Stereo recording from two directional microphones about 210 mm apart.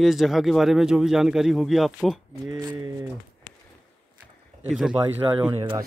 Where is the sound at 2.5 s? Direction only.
20° right (ahead or behind).